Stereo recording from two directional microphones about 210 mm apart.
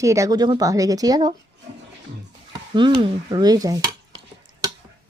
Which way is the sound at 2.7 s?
20° right (ahead or behind).